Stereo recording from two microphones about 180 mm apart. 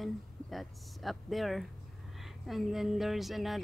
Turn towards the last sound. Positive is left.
turn(degrees=0)  # may be behind; listen again after turning